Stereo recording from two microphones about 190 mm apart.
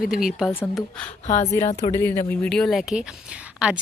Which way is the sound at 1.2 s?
40° left (ahead or behind).